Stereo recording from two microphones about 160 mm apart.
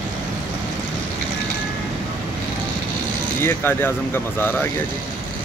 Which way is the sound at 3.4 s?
15° left (ahead or behind).